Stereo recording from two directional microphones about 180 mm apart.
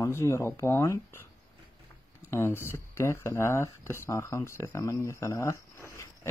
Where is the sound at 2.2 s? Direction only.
15° left (ahead or behind).